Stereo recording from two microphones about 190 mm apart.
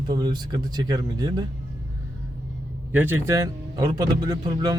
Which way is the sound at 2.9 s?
10° right (ahead or behind).